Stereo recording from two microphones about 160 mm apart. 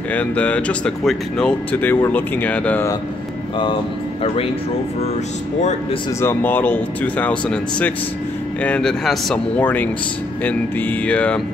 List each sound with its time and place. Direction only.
0.1 s speech: 10° left (ahead or behind)
5.6 s a man's voice: 45° left (ahead or behind)
6.2 s speech: 10° left (ahead or behind)